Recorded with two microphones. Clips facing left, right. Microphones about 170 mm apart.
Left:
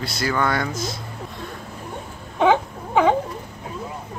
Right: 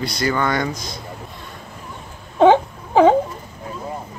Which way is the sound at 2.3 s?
30° right (ahead or behind).